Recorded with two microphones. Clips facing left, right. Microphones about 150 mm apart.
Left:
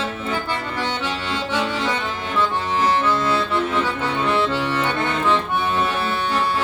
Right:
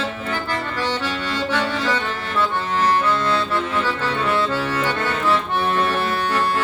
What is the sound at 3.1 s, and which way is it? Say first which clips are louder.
Harmonica: even; 15° left (ahead or behind).